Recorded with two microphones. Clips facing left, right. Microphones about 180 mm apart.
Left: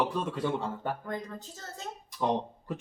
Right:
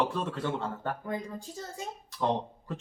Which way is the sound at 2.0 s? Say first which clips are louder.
Left 1 dB; 15° left (ahead or behind).